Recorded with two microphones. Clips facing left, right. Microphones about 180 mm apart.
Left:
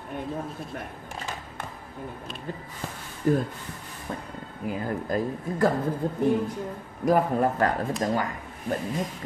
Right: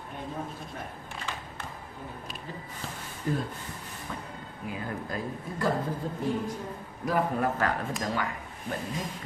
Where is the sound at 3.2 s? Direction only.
50° left (ahead or behind).